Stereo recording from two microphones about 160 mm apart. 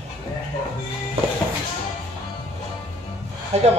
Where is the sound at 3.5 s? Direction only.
45° right (ahead or behind).